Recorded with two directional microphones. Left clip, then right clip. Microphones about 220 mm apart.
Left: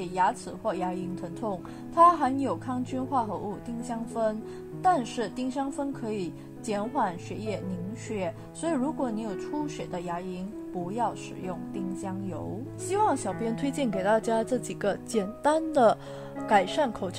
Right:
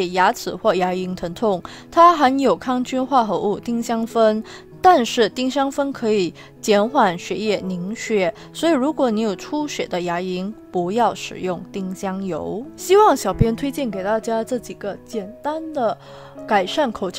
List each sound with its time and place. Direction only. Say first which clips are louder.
0.0 s speech: right 9 dB; 40° right (ahead or behind); by 14.6 s 15° right (ahead or behind)
14.8 s speech: right 1 dB; centre (ahead or behind)
16.4 s speech: right 5 dB; 20° right (ahead or behind)